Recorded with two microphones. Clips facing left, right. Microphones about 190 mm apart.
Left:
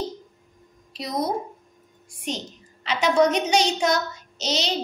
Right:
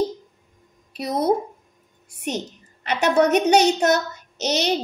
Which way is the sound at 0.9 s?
60° right (ahead or behind).